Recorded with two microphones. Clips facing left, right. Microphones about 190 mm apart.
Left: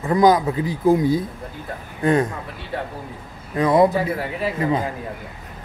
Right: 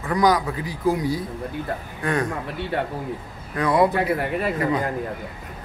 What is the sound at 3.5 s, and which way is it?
Speech, 20° left (ahead or behind).